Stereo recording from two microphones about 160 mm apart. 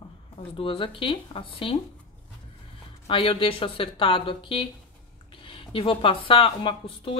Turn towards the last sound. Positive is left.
turn(degrees=35)  # may be behind; listen again after turning